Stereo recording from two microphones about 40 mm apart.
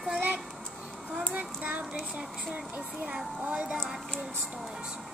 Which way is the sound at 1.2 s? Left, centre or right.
Right.